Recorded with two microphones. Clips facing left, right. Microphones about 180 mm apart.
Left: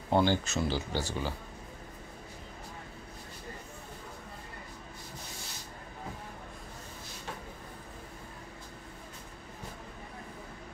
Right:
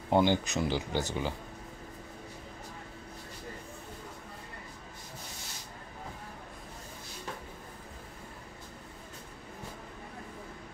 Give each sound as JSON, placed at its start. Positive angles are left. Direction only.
{"t": 0.1, "sound": "speech", "side_deg": -15}